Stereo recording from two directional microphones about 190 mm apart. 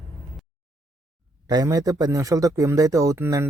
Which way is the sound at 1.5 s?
20° right (ahead or behind).